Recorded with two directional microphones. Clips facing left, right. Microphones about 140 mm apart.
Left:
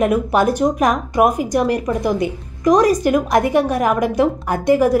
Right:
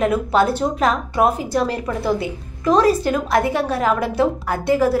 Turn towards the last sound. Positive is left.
turn(degrees=15)  # may be behind; listen again after turning